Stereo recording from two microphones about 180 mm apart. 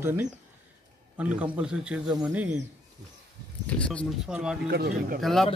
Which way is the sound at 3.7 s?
5° left (ahead or behind).